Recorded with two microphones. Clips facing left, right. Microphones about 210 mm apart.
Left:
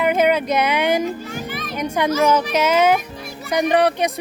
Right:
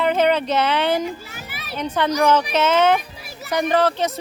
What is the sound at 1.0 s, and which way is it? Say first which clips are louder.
Children playing: left 5 dB; 10° right (ahead or behind).